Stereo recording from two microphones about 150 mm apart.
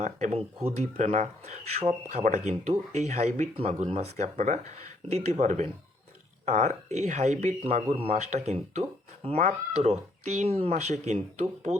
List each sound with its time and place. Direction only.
0.0 s speech: 50° right (ahead or behind)